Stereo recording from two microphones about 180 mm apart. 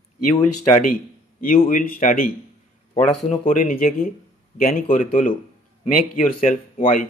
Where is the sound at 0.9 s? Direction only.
50° left (ahead or behind).